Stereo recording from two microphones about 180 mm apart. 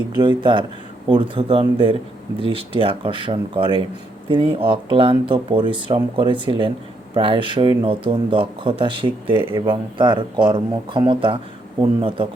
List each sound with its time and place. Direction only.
0.2 s speech: 25° right (ahead or behind)